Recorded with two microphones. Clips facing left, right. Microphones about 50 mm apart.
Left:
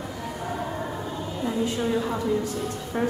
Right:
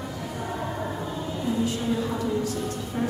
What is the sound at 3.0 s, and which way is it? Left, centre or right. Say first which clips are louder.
Music: left 3 dB; left.